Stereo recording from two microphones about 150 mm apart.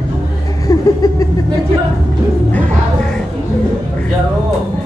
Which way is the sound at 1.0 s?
20° left (ahead or behind).